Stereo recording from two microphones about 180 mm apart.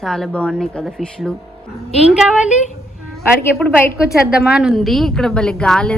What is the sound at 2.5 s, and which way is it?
Speech, 40° left (ahead or behind).